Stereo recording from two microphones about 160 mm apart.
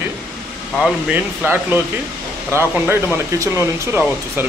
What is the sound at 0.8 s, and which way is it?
Speech, 10° right (ahead or behind).